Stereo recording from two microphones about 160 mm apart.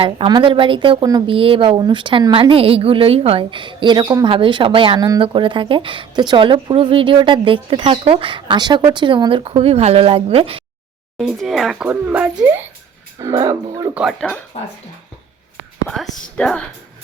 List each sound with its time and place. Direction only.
0.0 s a woman's voice: 30° right (ahead or behind)
11.2 s speech: centre (ahead or behind)
12.5 s a sound: 10° right (ahead or behind)
13.1 s speech: 20° right (ahead or behind)
13.9 s speech: 5° right (ahead or behind)
16.2 s speech: 5° left (ahead or behind)